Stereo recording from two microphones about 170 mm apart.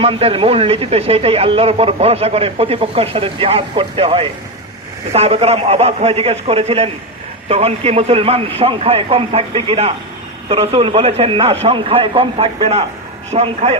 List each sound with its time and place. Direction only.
0.0 s speech: 35° right (ahead or behind)